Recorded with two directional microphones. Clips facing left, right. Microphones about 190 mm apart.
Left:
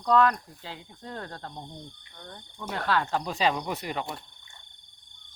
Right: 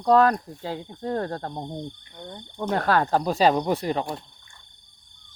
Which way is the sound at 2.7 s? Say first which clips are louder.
Right 6 dB; 45° right (ahead or behind).